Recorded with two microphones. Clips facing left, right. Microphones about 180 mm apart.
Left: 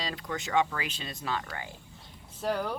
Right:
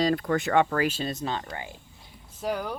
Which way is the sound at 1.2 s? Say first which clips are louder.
Right 3 dB; 30° right (ahead or behind).